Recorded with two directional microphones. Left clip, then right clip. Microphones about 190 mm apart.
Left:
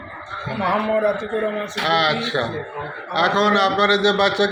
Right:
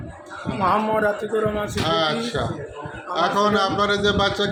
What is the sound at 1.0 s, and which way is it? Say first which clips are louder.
Speech: left 1 dB; 25° right (ahead or behind).